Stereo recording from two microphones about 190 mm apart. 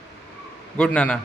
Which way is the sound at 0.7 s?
5° left (ahead or behind).